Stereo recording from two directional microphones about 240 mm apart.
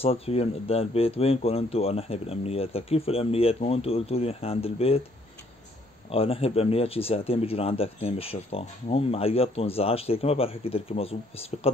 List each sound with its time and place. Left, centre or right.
0.0 s speech: left
6.1 s speech: left